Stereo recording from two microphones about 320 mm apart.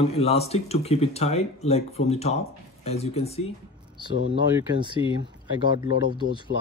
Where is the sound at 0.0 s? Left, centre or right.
Centre.